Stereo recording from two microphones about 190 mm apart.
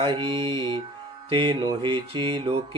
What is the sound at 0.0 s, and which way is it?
Mantra, 25° right (ahead or behind).